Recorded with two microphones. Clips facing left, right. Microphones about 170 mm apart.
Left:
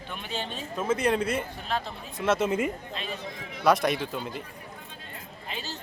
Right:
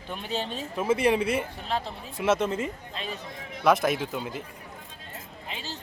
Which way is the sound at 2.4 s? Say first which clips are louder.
Left 2 dB; 15° left (ahead or behind).